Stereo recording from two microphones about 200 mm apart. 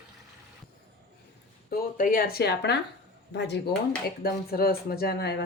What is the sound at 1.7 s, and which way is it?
Speech, 45° left (ahead or behind).